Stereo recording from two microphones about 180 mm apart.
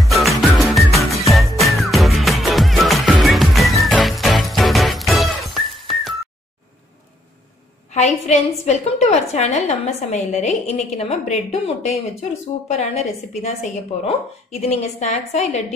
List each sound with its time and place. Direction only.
0.0 s music: centre (ahead or behind)
7.9 s a woman's voice: 40° left (ahead or behind)